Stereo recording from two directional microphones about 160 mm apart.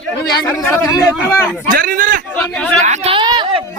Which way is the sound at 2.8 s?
35° right (ahead or behind).